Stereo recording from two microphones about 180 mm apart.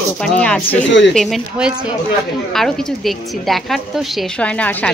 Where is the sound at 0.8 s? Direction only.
90° left.